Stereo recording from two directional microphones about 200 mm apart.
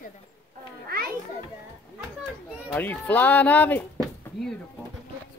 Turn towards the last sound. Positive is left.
turn(degrees=10)  # may be behind; listen again after turning